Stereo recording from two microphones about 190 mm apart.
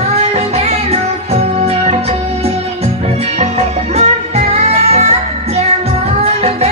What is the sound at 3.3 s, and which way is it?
Music, 35° right (ahead or behind).